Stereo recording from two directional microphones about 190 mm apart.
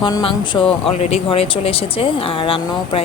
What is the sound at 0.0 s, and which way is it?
Speech, 25° left (ahead or behind).